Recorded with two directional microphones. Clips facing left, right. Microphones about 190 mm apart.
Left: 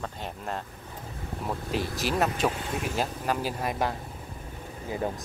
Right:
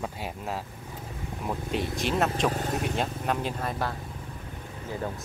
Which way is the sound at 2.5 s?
45° right (ahead or behind).